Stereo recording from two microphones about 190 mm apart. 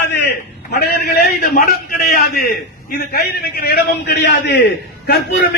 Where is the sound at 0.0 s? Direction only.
60° left (ahead or behind).